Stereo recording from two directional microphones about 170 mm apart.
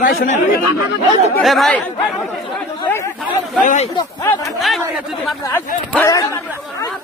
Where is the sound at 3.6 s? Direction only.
50° left (ahead or behind).